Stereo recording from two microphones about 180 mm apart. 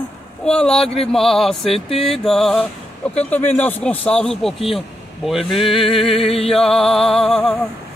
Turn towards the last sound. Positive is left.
turn(degrees=5)  # may be behind; listen again after turning